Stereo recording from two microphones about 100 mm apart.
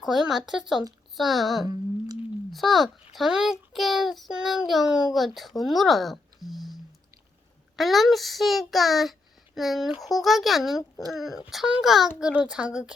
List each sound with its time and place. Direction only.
0.0 s a child's voice: 5° right (ahead or behind)
1.6 s a sound: 40° right (ahead or behind)
2.5 s a child's voice: centre (ahead or behind)
7.8 s a child's voice: centre (ahead or behind)